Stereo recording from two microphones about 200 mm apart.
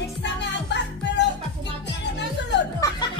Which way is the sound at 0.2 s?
60° left (ahead or behind).